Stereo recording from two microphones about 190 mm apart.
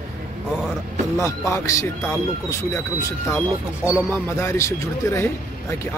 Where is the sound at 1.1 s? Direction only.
15° left (ahead or behind).